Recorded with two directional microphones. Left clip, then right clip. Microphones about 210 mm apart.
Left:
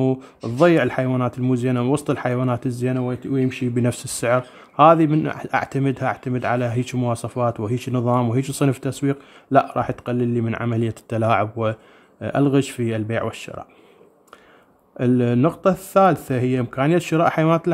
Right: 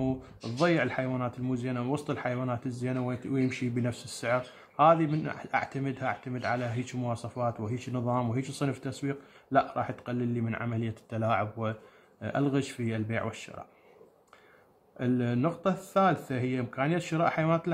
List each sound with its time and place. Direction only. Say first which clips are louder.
0.0 s speech: left 11 dB; 40° left (ahead or behind)
15.0 s speech: left 11 dB; 40° left (ahead or behind)